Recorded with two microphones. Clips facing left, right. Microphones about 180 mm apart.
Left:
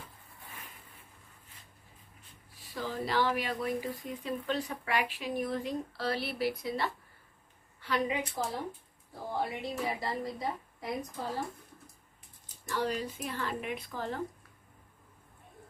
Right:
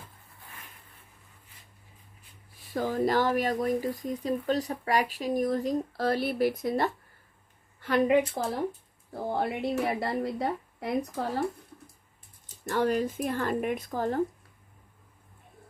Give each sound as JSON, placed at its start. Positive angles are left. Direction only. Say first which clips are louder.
{"t": 2.6, "sound": "speech", "louder": "right 9 dB", "side_deg": -50}
{"t": 9.3, "sound": "speech", "louder": "right 6 dB", "side_deg": -60}
{"t": 12.6, "sound": "speech", "louder": "right 7 dB", "side_deg": -55}